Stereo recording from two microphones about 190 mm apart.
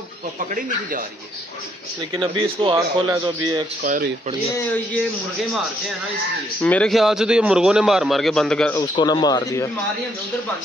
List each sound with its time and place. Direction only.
2.6 s speech: 25° right (ahead or behind)
3.8 s speech: 45° right (ahead or behind)
6.6 s a man's voice: 5° left (ahead or behind)
8.7 s speech: 20° left (ahead or behind)